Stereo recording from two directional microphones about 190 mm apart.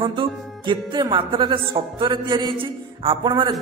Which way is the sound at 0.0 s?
25° right (ahead or behind).